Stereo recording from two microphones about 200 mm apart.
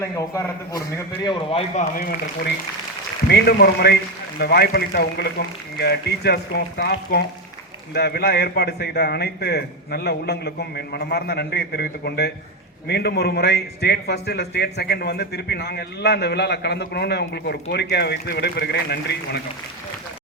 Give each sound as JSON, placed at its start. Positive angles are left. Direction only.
{"t": 0.0, "sound": "a man's voice", "side_deg": 15}
{"t": 3.2, "sound": "a man's voice", "side_deg": 55}